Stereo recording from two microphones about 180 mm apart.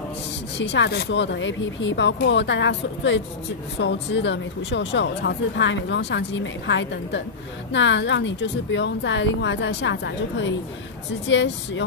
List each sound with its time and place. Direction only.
0.6 s speech: 80° left